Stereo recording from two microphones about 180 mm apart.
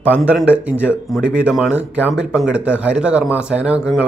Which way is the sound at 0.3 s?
5° right (ahead or behind).